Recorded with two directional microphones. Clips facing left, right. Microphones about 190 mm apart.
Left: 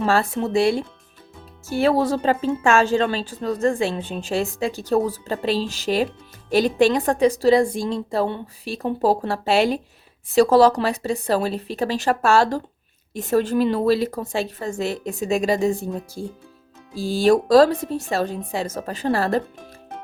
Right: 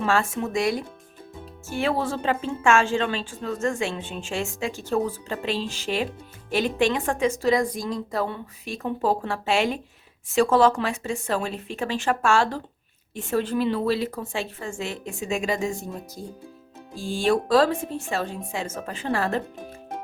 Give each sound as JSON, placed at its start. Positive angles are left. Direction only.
{"t": 0.0, "sound": "a woman's voice", "side_deg": 35}